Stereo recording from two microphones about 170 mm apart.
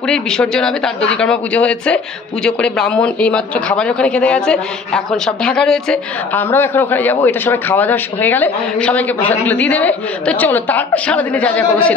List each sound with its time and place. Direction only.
0.0 s speech: 5° left (ahead or behind)